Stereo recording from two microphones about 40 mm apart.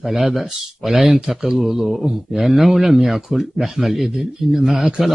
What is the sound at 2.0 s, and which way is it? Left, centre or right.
Speech, centre.